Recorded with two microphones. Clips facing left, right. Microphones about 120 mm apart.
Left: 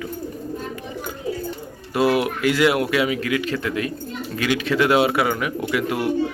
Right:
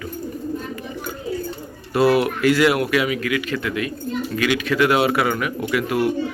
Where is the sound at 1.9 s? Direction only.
15° left (ahead or behind).